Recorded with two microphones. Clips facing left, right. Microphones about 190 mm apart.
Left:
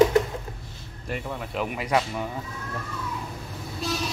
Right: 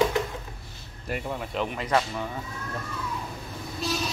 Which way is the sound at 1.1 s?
5° right (ahead or behind).